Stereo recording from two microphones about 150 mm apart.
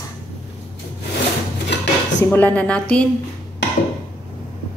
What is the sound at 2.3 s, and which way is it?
Speech, 10° left (ahead or behind).